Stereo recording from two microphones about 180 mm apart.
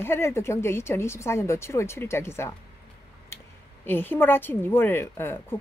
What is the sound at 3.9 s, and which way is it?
Speech, 10° left (ahead or behind).